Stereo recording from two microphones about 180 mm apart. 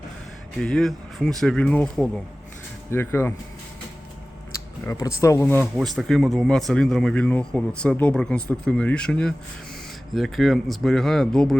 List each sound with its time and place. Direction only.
0.6 s speech: 5° left (ahead or behind)
4.9 s speech: 15° left (ahead or behind)
5.7 s speech: centre (ahead or behind)